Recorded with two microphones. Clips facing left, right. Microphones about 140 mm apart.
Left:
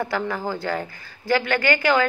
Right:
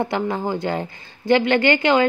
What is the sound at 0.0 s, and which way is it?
A woman's voice, 20° right (ahead or behind).